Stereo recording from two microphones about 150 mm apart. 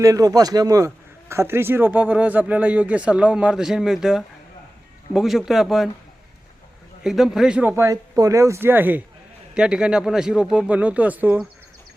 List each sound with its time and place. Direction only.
0.0 s a man's voice: 20° right (ahead or behind); by 5.9 s centre (ahead or behind)
7.0 s a man's voice: 5° right (ahead or behind)
7.8 s speech: 20° right (ahead or behind)